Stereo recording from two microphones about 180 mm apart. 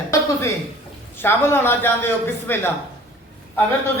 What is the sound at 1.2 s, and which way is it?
Speech, 10° left (ahead or behind).